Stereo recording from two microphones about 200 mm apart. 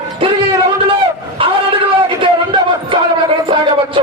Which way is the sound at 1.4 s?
25° right (ahead or behind).